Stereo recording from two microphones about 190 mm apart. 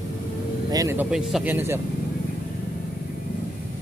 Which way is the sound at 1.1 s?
5° right (ahead or behind).